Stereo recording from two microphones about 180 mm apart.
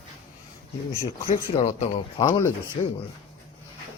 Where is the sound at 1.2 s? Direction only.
30° left (ahead or behind).